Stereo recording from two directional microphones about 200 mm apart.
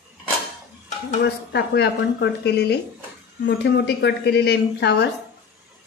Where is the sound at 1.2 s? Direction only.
55° left (ahead or behind).